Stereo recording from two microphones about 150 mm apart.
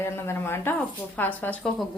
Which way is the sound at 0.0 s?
15° left (ahead or behind).